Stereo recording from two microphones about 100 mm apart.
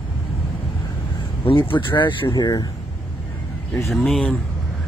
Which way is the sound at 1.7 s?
55° left (ahead or behind).